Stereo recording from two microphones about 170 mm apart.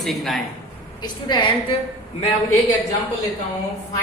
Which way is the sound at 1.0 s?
25° left (ahead or behind).